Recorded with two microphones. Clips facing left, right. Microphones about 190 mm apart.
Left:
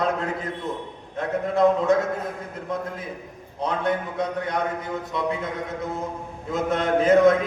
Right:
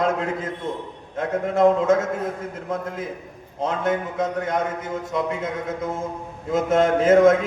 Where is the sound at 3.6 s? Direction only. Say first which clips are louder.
Right 1 dB; 45° right (ahead or behind).